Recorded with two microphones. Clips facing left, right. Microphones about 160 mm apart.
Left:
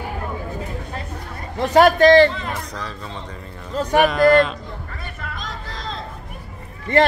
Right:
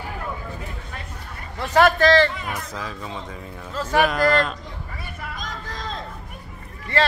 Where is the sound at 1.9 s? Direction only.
20° left (ahead or behind).